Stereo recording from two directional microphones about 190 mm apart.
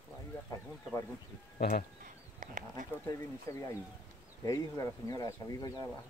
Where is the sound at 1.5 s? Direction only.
50° left (ahead or behind).